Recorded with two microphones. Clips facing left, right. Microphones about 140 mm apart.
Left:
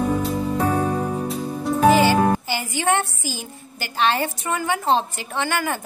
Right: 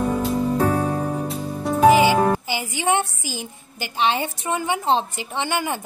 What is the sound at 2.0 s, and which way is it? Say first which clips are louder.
A woman's voice: even; 15° right (ahead or behind).